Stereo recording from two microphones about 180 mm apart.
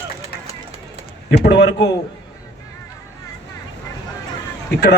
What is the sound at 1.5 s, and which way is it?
Speech, 75° left (ahead or behind).